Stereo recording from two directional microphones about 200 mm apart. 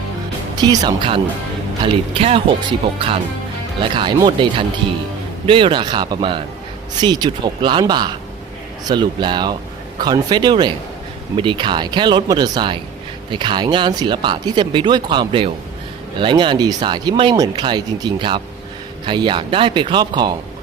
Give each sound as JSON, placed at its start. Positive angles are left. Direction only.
{"t": 0.6, "sound": "speech", "side_deg": -20}
{"t": 3.8, "sound": "speech", "side_deg": -25}